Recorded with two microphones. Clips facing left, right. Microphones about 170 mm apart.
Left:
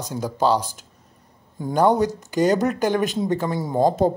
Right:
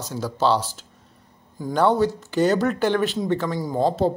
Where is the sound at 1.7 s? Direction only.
15° left (ahead or behind).